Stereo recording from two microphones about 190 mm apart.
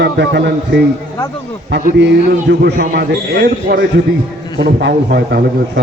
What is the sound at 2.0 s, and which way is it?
A man's voice, 60° right (ahead or behind).